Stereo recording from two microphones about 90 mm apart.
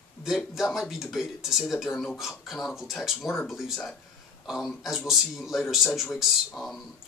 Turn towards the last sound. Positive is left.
turn(degrees=0)  # may be behind; listen again after turning